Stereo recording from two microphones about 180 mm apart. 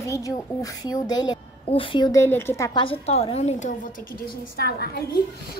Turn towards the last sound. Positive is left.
turn(degrees=60)  # may be behind; listen again after turning